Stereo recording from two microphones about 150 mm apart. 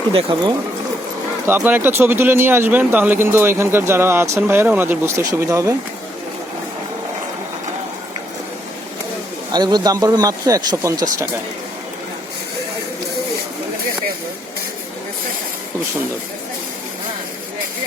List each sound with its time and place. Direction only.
0.1 s speech: 35° right (ahead or behind)
1.5 s speech: 10° right (ahead or behind)
9.5 s speech: 25° right (ahead or behind)